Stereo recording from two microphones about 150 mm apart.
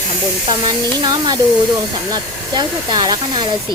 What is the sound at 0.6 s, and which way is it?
Speech, 30° right (ahead or behind).